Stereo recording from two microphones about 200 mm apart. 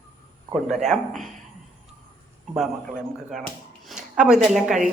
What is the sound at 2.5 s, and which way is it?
A woman's voice, centre (ahead or behind).